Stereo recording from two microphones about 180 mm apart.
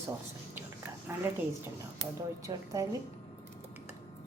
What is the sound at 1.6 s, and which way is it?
Speech, 20° right (ahead or behind).